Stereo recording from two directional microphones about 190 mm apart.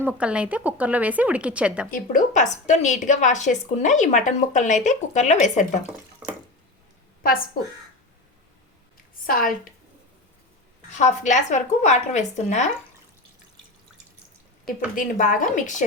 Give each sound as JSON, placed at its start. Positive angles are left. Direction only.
{"t": 0.0, "sound": "a woman's voice", "side_deg": -5}
{"t": 1.9, "sound": "a woman's voice", "side_deg": 40}
{"t": 7.2, "sound": "a woman's voice", "side_deg": 50}
{"t": 9.2, "sound": "speech", "side_deg": 45}
{"t": 10.9, "sound": "a woman's voice", "side_deg": 40}
{"t": 14.9, "sound": "a woman's voice", "side_deg": 45}